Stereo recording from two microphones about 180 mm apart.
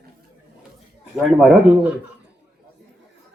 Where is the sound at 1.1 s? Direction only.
Centre (ahead or behind).